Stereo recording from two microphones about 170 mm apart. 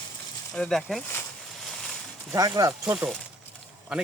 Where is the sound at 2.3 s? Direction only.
20° right (ahead or behind).